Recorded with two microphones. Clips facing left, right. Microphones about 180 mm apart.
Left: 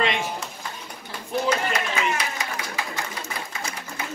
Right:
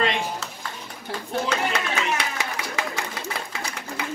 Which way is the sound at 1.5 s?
70° right (ahead or behind).